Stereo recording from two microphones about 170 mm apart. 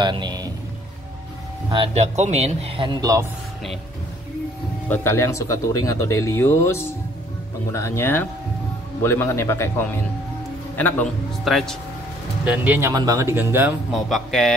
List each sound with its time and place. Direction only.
0.0 s a man's voice: 25° right (ahead or behind)
2.0 s speech: 40° right (ahead or behind); by 3.3 s 20° right (ahead or behind)
4.8 s speech: 15° left (ahead or behind)
11.4 s speech: centre (ahead or behind)
12.4 s speech: 10° right (ahead or behind)
13.9 s speech: centre (ahead or behind)